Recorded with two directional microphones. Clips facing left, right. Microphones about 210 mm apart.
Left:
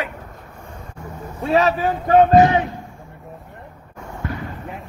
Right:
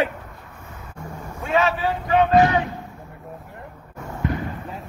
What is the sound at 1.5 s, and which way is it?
Speech, 40° left (ahead or behind).